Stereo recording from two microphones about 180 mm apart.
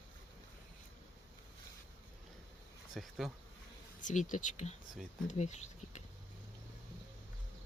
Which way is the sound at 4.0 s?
45° left (ahead or behind).